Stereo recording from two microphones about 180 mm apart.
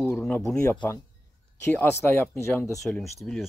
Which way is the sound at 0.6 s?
15° left (ahead or behind).